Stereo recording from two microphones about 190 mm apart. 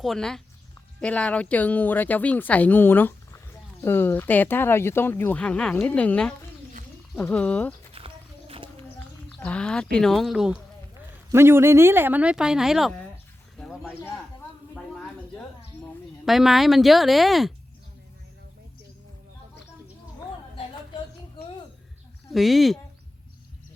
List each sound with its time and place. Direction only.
0.0 s speech: centre (ahead or behind)
7.9 s a sound: 30° right (ahead or behind)
9.4 s speech: 5° left (ahead or behind)
16.2 s speech: centre (ahead or behind)
22.3 s speech: centre (ahead or behind)